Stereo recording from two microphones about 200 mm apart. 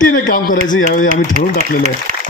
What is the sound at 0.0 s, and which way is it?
Speech, 45° left (ahead or behind).